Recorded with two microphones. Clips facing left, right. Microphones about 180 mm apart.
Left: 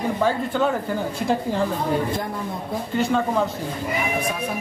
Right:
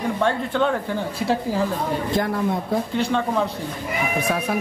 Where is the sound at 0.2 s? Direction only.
5° left (ahead or behind).